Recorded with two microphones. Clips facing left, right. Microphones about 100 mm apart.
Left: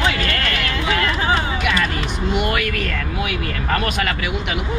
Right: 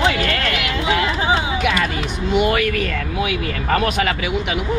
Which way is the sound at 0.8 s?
15° right (ahead or behind).